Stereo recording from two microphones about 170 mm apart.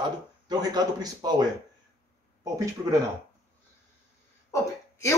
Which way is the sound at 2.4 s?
20° right (ahead or behind).